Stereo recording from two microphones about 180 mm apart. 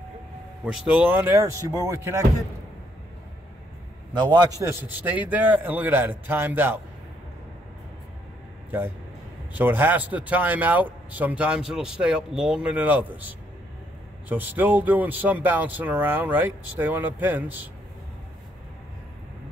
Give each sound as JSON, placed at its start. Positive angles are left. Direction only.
{"t": 0.7, "sound": "speech", "side_deg": -5}
{"t": 4.5, "sound": "a man's voice", "side_deg": -20}
{"t": 9.6, "sound": "speech", "side_deg": -10}